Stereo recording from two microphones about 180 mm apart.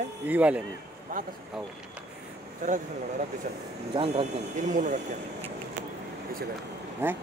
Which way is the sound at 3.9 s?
30° right (ahead or behind).